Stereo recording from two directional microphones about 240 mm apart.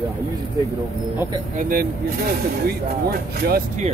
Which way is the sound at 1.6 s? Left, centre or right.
Right.